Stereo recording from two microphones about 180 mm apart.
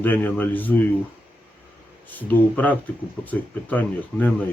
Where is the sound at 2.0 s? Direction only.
10° left (ahead or behind).